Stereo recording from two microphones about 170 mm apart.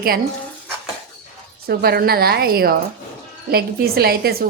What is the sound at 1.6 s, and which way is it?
A woman's voice, 65° right (ahead or behind).